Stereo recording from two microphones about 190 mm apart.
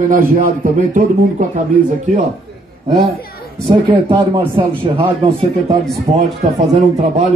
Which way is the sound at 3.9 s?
25° right (ahead or behind).